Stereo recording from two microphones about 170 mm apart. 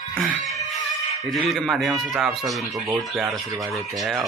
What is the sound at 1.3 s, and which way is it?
Speech, centre (ahead or behind).